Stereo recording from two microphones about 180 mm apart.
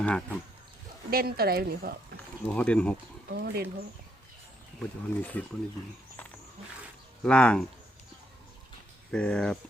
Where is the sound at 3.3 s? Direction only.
60° right (ahead or behind).